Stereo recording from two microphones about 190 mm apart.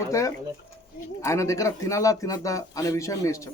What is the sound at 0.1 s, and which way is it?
Speech, 15° left (ahead or behind).